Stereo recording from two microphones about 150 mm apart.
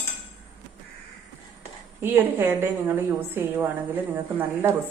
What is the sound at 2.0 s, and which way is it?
A woman's voice, 15° right (ahead or behind).